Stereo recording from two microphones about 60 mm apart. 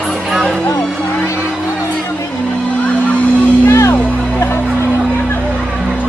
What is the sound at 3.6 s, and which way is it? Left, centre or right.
Music, left.